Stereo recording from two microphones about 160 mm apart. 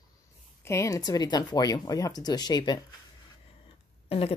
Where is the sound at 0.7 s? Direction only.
20° left (ahead or behind).